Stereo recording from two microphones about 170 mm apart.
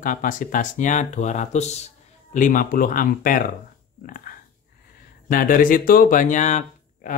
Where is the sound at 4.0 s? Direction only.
55° left (ahead or behind).